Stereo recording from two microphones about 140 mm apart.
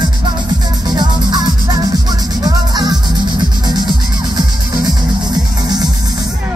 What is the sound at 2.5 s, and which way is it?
Music, 30° right (ahead or behind).